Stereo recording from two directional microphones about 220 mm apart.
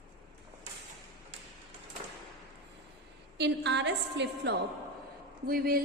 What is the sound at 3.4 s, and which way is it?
A woman's voice, 50° right (ahead or behind).